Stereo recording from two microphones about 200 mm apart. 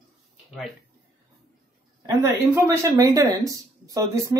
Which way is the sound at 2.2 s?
15° right (ahead or behind).